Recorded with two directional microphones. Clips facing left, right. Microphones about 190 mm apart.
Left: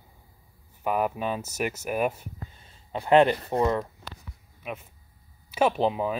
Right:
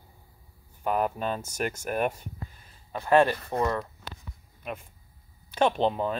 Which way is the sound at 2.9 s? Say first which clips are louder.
Left 2 dB; 20° left (ahead or behind).